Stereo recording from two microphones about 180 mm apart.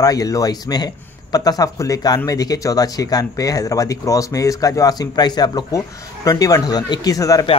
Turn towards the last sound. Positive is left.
turn(degrees=20)  # may be behind; listen again after turning